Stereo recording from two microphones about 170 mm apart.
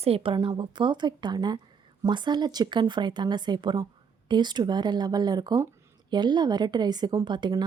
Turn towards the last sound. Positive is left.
turn(degrees=-25)  # may be behind; listen again after turning